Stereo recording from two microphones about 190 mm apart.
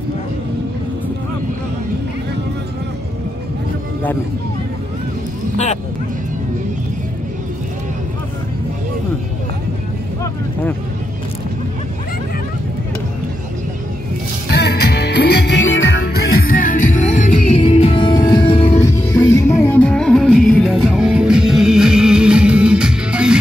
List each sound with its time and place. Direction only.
14.5 s music: 60° left (ahead or behind); by 18.9 s 30° left (ahead or behind)
18.9 s music: 15° left (ahead or behind); by 23.4 s 5° right (ahead or behind)